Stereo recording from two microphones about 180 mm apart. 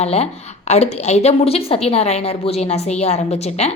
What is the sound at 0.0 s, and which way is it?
A woman's voice, 35° left (ahead or behind).